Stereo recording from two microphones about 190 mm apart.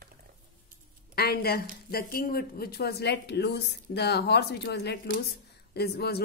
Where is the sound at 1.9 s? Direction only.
50° left (ahead or behind).